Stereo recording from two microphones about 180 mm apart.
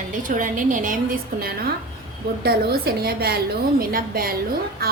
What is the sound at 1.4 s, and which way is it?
A woman's voice, 60° right (ahead or behind).